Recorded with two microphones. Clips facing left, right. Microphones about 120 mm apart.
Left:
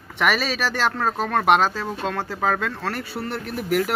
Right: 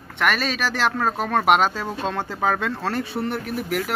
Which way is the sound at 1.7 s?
5° left (ahead or behind).